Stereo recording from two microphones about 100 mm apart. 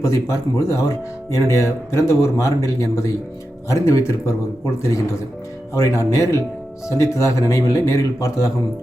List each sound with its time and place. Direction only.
0.0 s speech: 30° left (ahead or behind)
5.7 s speech: 30° left (ahead or behind)